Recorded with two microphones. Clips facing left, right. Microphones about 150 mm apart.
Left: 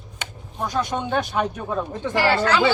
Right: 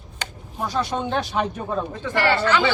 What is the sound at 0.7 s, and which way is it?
Speech, centre (ahead or behind).